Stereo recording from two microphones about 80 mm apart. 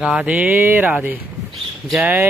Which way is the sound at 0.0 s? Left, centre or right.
Centre.